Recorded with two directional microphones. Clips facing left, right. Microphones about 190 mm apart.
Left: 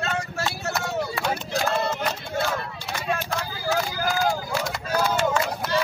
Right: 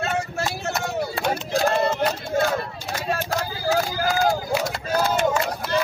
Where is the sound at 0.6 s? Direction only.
30° right (ahead or behind).